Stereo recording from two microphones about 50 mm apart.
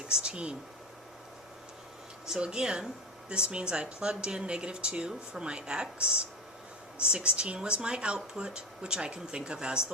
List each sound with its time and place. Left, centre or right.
0.1 s speech: centre
2.4 s speech: centre